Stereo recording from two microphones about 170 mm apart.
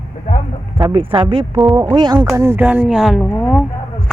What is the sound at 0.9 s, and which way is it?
Speech, 30° right (ahead or behind).